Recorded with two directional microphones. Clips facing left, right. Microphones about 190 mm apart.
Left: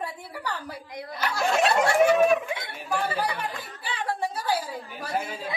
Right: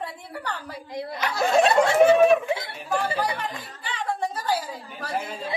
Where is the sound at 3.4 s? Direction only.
10° left (ahead or behind).